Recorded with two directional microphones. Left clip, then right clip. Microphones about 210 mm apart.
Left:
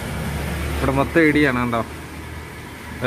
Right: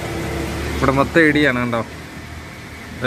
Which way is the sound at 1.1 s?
5° right (ahead or behind).